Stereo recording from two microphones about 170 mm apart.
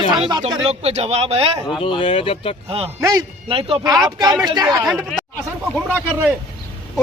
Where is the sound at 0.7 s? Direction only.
40° right (ahead or behind).